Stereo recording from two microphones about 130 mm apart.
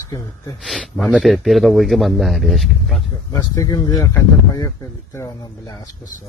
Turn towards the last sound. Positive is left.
turn(degrees=25)  # may be behind; listen again after turning